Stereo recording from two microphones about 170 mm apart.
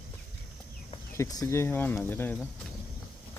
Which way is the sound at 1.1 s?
20° left (ahead or behind).